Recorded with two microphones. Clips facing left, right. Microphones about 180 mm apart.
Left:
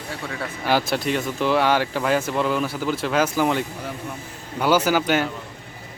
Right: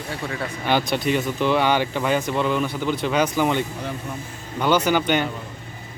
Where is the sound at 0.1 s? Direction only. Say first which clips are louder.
Right 2 dB; centre (ahead or behind).